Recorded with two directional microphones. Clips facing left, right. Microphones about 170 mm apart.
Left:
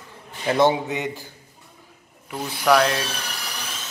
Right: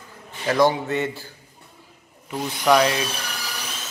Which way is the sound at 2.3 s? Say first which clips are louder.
Even; 5° right (ahead or behind).